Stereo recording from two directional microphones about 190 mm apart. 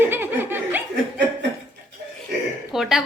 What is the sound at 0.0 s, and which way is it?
Snicker, 10° right (ahead or behind).